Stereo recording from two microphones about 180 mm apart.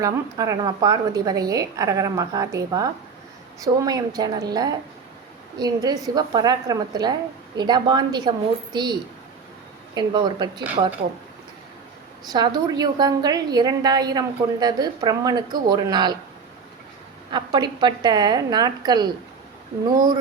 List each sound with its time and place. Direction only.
0.0 s a woman's voice: 20° right (ahead or behind)
12.3 s a woman's voice: 20° right (ahead or behind)
17.3 s a woman's voice: 25° right (ahead or behind)